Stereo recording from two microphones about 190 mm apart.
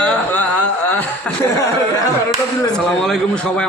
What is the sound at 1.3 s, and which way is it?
Chuckle, 10° left (ahead or behind).